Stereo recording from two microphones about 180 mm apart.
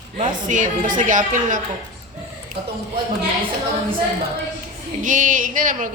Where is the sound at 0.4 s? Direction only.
45° right (ahead or behind).